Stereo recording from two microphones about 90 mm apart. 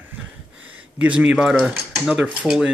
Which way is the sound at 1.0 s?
15° right (ahead or behind).